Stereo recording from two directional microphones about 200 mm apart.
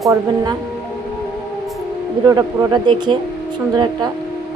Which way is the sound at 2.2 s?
15° right (ahead or behind).